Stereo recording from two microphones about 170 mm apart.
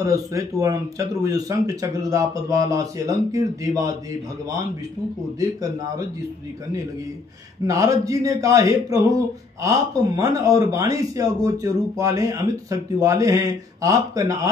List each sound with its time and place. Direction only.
0.0 s a man's voice: 20° right (ahead or behind)
5.4 s a man's voice: 20° right (ahead or behind)
7.6 s a man's voice: 20° right (ahead or behind)